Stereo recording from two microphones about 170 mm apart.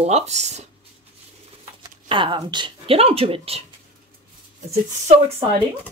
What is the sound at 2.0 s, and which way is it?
Speech, 30° right (ahead or behind).